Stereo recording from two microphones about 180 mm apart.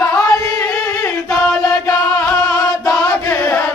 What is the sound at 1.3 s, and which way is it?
Chant, centre (ahead or behind).